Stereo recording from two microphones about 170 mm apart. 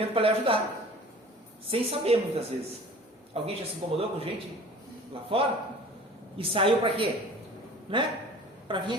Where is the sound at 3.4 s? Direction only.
35° right (ahead or behind).